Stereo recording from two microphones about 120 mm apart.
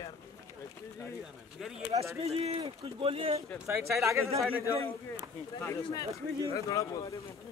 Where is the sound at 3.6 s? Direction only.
25° right (ahead or behind).